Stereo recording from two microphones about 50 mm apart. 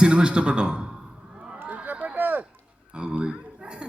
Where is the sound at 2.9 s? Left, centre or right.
Right.